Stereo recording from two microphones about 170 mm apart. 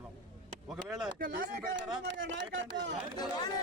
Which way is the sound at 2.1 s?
90° right.